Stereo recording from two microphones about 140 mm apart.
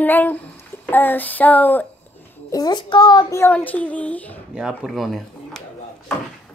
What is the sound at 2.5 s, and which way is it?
Speech, 30° left (ahead or behind).